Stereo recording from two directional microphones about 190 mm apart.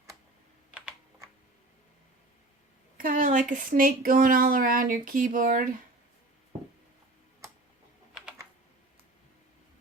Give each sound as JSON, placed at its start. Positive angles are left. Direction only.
{"t": 3.0, "sound": "speech", "side_deg": -45}
{"t": 8.1, "sound": "typing", "side_deg": -5}